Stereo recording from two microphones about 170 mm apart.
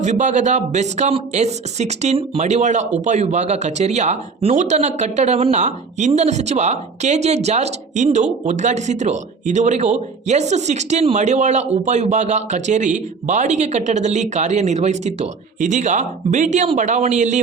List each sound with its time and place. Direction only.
0.0 s speech: 45° right (ahead or behind)